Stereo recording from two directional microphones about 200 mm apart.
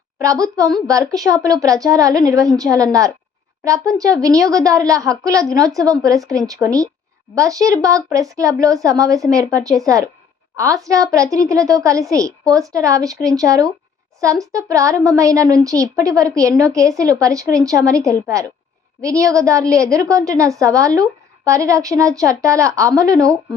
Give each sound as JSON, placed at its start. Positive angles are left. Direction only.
{"t": 0.2, "sound": "speech", "side_deg": -15}